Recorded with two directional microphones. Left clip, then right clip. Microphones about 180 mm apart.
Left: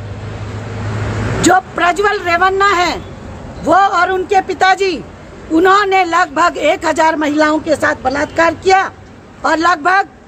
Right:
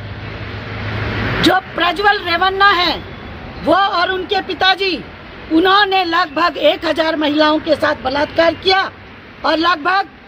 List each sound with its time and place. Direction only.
1.4 s speech: 10° left (ahead or behind)
2.0 s speech: 45° left (ahead or behind)
2.3 s a woman's voice: 15° left (ahead or behind)
6.5 s speech: 45° left (ahead or behind)
6.8 s a woman's voice: 15° left (ahead or behind)